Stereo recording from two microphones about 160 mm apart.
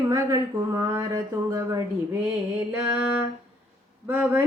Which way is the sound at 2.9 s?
5° right (ahead or behind).